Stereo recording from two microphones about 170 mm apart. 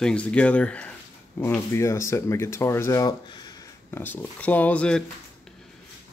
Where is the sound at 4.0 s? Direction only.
10° left (ahead or behind).